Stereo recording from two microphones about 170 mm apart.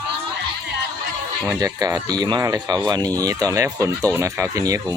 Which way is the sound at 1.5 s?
20° right (ahead or behind).